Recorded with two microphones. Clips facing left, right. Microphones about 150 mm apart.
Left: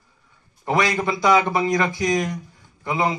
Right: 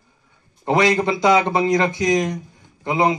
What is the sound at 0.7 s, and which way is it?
A man's voice, 25° right (ahead or behind).